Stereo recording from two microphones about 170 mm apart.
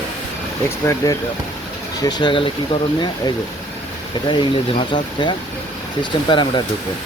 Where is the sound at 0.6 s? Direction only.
20° left (ahead or behind).